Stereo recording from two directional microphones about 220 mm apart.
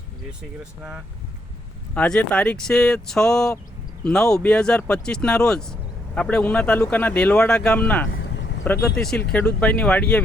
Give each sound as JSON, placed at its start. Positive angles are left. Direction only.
{"t": 0.3, "sound": "a man's voice", "side_deg": -5}
{"t": 8.1, "sound": "vehicle", "side_deg": 50}
{"t": 8.6, "sound": "a man's voice", "side_deg": 5}